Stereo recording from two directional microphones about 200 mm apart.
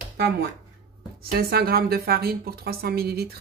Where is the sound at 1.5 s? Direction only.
50° right (ahead or behind).